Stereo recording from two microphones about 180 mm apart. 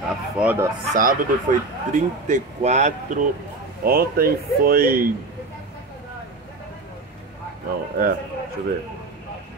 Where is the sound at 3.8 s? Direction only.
55° right (ahead or behind).